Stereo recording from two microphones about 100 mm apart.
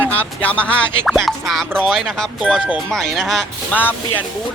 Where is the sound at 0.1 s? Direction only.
15° left (ahead or behind).